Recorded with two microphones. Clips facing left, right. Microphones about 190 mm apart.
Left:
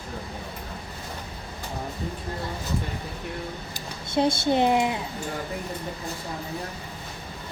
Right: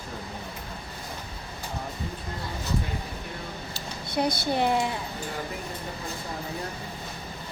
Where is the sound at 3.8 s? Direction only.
25° left (ahead or behind).